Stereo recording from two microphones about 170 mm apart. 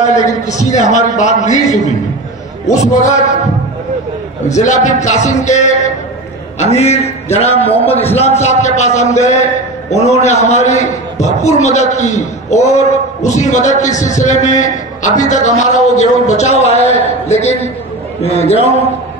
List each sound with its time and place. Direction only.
0.0 s a man's voice: 45° left (ahead or behind)
4.5 s a man's voice: 45° left (ahead or behind)